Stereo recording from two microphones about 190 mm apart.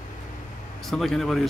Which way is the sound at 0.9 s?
Centre (ahead or behind).